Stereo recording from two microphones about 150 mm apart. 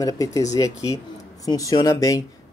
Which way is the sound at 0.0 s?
25° left (ahead or behind).